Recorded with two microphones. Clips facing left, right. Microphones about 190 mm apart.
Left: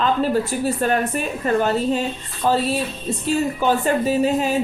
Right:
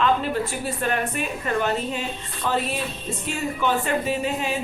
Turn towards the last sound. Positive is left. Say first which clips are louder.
# left 7 dB
turn(degrees=40)  # may be behind; listen again after turning